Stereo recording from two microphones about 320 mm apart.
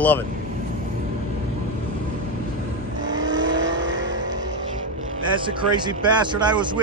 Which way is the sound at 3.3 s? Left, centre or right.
Right.